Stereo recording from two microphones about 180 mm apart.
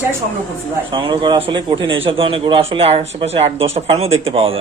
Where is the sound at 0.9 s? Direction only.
25° right (ahead or behind).